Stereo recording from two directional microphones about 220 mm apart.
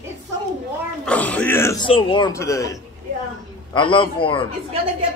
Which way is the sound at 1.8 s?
25° left (ahead or behind).